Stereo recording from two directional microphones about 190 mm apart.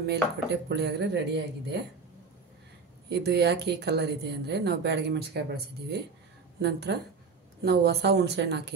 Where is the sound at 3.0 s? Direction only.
60° right (ahead or behind).